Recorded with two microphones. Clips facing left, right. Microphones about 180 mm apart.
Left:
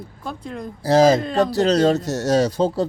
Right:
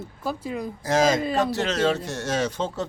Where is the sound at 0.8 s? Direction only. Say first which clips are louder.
Left 7 dB; 35° left (ahead or behind).